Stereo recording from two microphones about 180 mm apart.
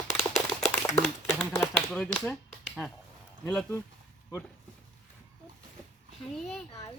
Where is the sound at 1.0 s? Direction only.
10° left (ahead or behind).